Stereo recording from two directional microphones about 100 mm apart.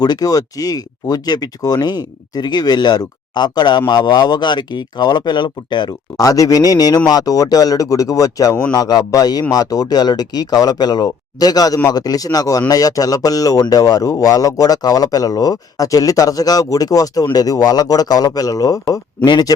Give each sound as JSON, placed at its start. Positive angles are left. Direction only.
{"t": 0.0, "sound": "speech", "side_deg": 40}